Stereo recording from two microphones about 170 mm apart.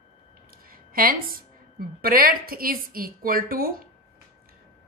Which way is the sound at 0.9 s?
60° right (ahead or behind).